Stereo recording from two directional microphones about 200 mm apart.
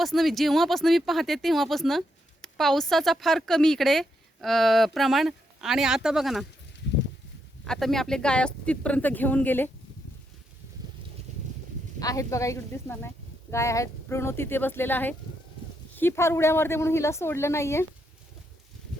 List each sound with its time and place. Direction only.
0.0 s speech: centre (ahead or behind)
7.6 s speech: centre (ahead or behind)
11.9 s a woman's voice: 15° left (ahead or behind)